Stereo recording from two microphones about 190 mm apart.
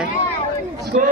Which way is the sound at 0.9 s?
40° right (ahead or behind).